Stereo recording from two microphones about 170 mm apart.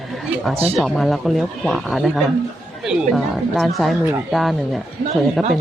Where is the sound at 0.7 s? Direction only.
Centre (ahead or behind).